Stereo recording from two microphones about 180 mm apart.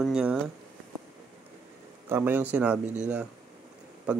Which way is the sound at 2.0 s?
10° right (ahead or behind).